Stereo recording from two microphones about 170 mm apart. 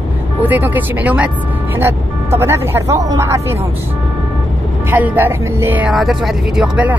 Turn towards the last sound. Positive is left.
turn(degrees=-5)  # may be behind; listen again after turning